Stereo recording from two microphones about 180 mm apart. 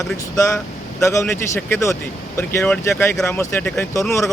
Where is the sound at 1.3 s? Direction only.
10° left (ahead or behind).